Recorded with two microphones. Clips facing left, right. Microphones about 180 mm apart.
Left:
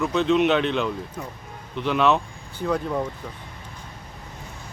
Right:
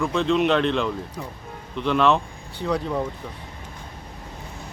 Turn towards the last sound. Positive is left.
turn(degrees=0)  # may be behind; listen again after turning